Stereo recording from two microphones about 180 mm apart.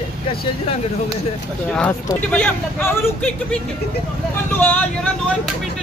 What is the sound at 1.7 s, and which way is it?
Speech, 5° left (ahead or behind).